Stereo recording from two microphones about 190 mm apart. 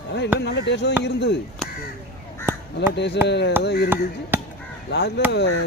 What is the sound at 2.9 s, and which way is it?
Speech, 65° left (ahead or behind).